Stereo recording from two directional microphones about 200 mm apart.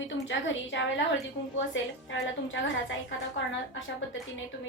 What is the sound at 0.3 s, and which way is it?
A woman's voice, 65° left (ahead or behind).